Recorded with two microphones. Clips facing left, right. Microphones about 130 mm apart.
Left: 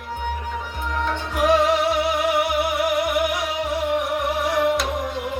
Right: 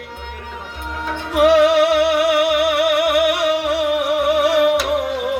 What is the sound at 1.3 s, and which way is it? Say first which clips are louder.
Music: right 7 dB; 70° right (ahead or behind).